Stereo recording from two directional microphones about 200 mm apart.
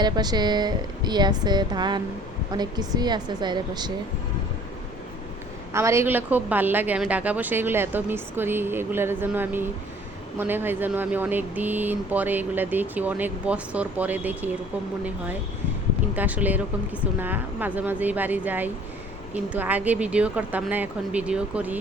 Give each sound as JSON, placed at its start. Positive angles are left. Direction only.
{"t": 0.0, "sound": "speech", "side_deg": -20}
{"t": 5.7, "sound": "speech", "side_deg": -15}
{"t": 16.1, "sound": "speech", "side_deg": -10}